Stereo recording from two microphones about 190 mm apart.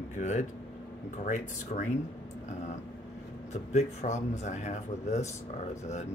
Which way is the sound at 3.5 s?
35° left (ahead or behind).